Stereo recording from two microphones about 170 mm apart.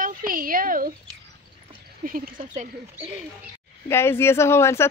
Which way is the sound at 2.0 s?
55° right (ahead or behind).